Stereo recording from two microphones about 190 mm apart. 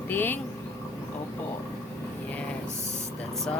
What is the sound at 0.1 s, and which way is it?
Speech, 10° left (ahead or behind).